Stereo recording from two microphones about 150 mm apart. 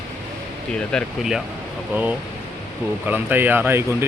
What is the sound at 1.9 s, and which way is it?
Speech, 10° right (ahead or behind).